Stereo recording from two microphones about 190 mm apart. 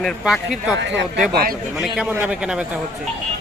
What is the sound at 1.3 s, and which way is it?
Speech, 55° right (ahead or behind).